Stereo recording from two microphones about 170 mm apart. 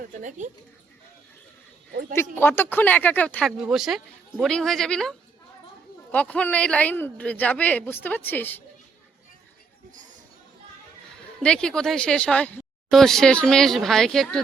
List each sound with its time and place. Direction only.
0.0 s a woman's voice: 45° right (ahead or behind)
1.9 s speech: 60° right (ahead or behind)
2.3 s a man's voice: 10° left (ahead or behind)
3.6 s a man's voice: 5° right (ahead or behind)
11.1 s speech: 5° left (ahead or behind)